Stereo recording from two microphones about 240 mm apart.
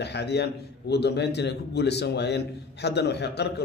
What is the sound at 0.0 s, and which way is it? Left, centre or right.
A man's voice, left.